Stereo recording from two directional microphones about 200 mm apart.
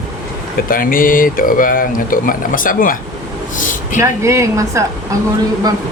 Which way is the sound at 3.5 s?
40° left (ahead or behind).